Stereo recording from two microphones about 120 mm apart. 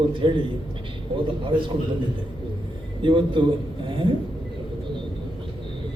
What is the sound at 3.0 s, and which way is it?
Speech, 45° right (ahead or behind).